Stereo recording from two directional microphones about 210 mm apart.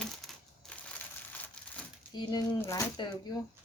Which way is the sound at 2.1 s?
20° left (ahead or behind).